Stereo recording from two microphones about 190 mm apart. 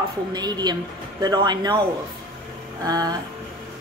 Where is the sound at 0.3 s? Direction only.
20° right (ahead or behind).